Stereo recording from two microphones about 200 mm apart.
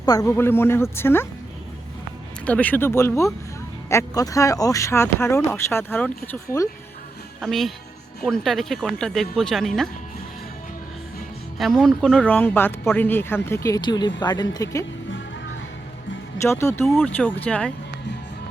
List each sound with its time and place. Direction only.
0.0 s speech: 20° left (ahead or behind)
2.5 s speech: 10° left (ahead or behind)
7.4 s speech: centre (ahead or behind)
11.5 s speech: centre (ahead or behind); by 14.8 s 15° left (ahead or behind)
16.4 s speech: 15° left (ahead or behind)
16.8 s speech: centre (ahead or behind)
17.2 s speech: 10° left (ahead or behind)